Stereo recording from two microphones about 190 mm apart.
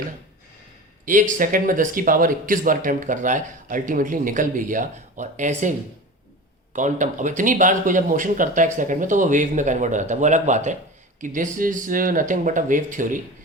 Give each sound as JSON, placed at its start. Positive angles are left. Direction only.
{"t": 1.0, "sound": "speech", "side_deg": -45}
{"t": 6.7, "sound": "speech", "side_deg": -40}